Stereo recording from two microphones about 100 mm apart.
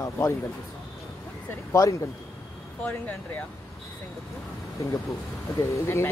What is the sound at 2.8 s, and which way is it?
Speech, 15° left (ahead or behind).